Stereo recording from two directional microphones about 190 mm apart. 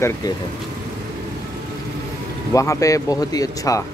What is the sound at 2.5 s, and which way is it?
Speech, 15° left (ahead or behind).